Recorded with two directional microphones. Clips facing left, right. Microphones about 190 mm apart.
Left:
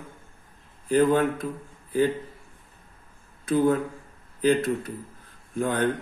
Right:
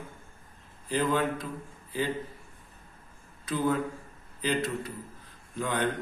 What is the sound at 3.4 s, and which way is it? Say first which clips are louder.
Speech: left 6 dB; 50° left (ahead or behind).